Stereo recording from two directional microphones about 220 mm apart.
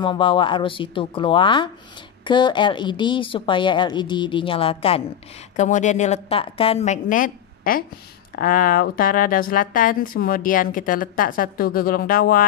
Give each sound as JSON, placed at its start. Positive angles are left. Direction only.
{"t": 0.0, "sound": "a woman's voice", "side_deg": 20}